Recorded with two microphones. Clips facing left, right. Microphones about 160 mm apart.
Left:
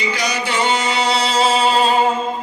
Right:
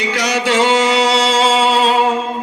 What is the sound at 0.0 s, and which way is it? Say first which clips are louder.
Music: right 4 dB; 80° right.